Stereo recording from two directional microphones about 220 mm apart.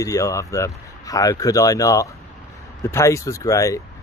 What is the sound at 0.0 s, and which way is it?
Speech, 15° left (ahead or behind).